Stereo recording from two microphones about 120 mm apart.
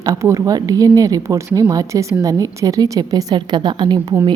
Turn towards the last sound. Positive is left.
turn(degrees=-40)  # may be behind; listen again after turning